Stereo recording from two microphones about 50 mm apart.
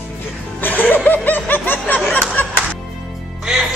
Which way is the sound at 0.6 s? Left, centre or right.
Left.